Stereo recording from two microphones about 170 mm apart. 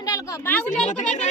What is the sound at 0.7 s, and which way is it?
Speech, 45° left (ahead or behind).